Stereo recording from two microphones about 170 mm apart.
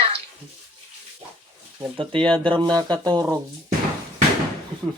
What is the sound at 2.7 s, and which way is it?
Speech, 25° right (ahead or behind).